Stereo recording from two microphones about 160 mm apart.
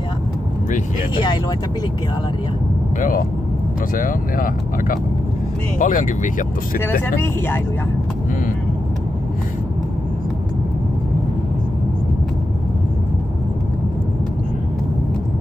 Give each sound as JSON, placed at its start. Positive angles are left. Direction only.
{"t": 3.0, "sound": "speech", "side_deg": 60}
{"t": 6.8, "sound": "speech", "side_deg": 15}